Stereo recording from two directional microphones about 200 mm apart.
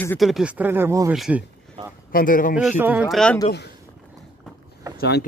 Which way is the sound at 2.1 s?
45° left (ahead or behind).